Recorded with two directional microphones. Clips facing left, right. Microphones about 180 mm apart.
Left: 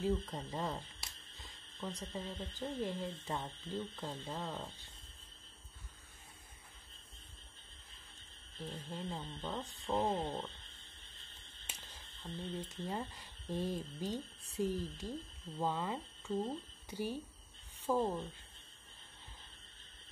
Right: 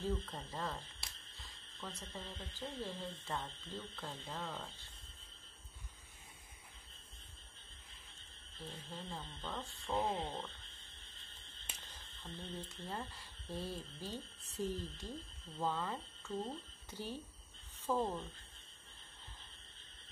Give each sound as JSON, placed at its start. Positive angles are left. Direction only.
{"t": 0.0, "sound": "speech", "side_deg": 10}
{"t": 1.8, "sound": "speech", "side_deg": 15}
{"t": 8.5, "sound": "speech", "side_deg": 15}
{"t": 12.2, "sound": "speech", "side_deg": 10}